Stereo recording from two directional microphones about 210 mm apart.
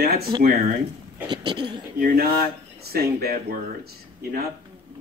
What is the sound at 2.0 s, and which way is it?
Speech, 45° right (ahead or behind).